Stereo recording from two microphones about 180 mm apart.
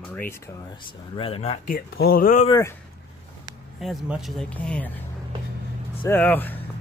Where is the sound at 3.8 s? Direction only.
Centre (ahead or behind).